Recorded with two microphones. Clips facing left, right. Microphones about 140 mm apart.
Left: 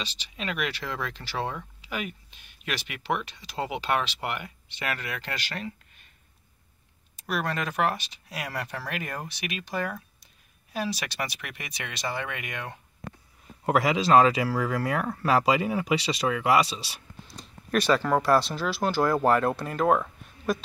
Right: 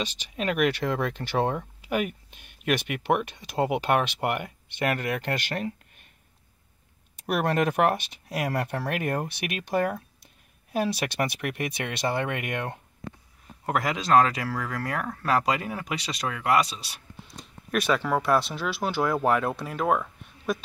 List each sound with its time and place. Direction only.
0.0 s speech: 50° right (ahead or behind)
7.2 s speech: 60° right (ahead or behind)
13.7 s speech: 5° left (ahead or behind)